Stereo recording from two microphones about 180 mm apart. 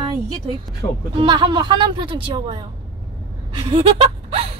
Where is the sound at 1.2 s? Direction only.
25° right (ahead or behind).